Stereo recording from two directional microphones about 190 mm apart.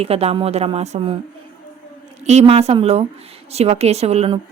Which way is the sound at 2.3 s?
35° right (ahead or behind).